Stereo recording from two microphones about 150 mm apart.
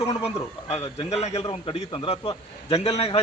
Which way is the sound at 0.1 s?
45° left (ahead or behind).